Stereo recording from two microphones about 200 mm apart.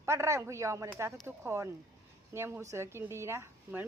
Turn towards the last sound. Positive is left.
turn(degrees=-15)  # may be behind; listen again after turning